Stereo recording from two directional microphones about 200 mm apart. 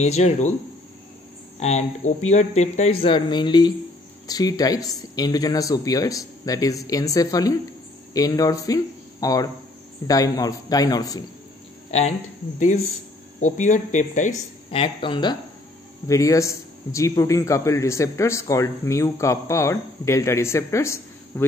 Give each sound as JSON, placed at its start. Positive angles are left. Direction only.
{"t": 0.0, "sound": "speech", "side_deg": 35}
{"t": 1.6, "sound": "a man's voice", "side_deg": 35}
{"t": 13.4, "sound": "speech", "side_deg": 40}
{"t": 14.7, "sound": "a man's voice", "side_deg": 25}